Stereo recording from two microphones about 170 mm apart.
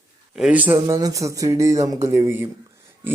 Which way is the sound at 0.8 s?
20° right (ahead or behind).